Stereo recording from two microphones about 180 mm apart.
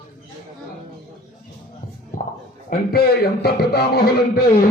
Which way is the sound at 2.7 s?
55° left (ahead or behind).